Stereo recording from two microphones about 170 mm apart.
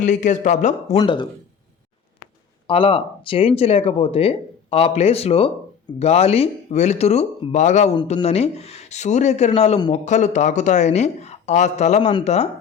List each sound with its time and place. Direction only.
0.0 s speech: 45° left (ahead or behind)
0.9 s speech: 25° left (ahead or behind)
2.6 s speech: 30° left (ahead or behind)